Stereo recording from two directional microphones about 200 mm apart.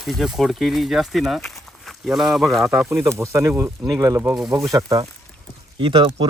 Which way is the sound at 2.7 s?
15° right (ahead or behind).